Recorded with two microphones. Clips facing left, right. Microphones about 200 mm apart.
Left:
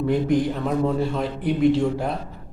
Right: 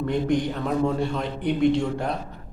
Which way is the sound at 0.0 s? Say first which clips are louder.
Left 3 dB; 5° left (ahead or behind).